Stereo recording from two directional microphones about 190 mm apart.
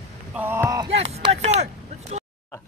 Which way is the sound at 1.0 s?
30° right (ahead or behind).